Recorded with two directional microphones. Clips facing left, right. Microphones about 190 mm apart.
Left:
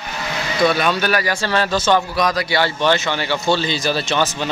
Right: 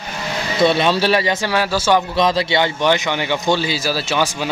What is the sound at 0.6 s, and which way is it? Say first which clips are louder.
Speech: right 2 dB; 25° right (ahead or behind).